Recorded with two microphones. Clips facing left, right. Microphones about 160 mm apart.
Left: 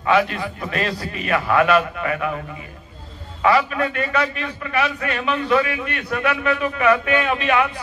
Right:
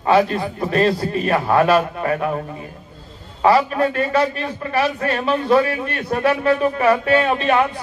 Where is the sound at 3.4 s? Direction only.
35° right (ahead or behind).